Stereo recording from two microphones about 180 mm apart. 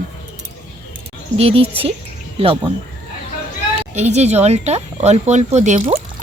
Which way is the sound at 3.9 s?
40° right (ahead or behind).